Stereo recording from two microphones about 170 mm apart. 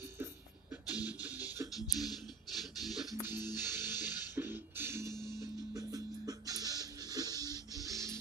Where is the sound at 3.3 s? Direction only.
25° left (ahead or behind).